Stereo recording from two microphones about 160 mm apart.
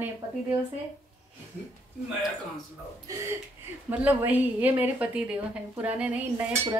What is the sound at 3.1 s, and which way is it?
Speech, 20° right (ahead or behind).